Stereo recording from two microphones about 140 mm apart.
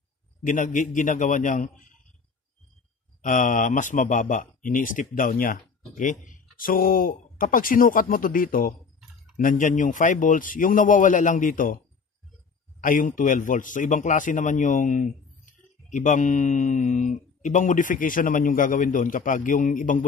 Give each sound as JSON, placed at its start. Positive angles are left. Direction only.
{"t": 0.4, "sound": "speech", "side_deg": 65}
{"t": 3.2, "sound": "speech", "side_deg": 70}
{"t": 9.4, "sound": "speech", "side_deg": 70}
{"t": 12.8, "sound": "speech", "side_deg": 75}